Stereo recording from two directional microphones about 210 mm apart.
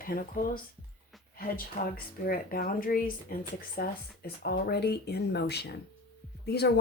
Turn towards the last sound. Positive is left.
turn(degrees=50)  # may be behind; listen again after turning